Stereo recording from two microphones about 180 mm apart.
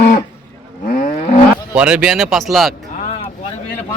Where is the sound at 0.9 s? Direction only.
40° left (ahead or behind).